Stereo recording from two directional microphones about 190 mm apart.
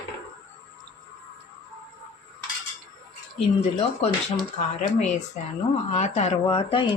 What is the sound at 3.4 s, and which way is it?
Speech, 30° left (ahead or behind).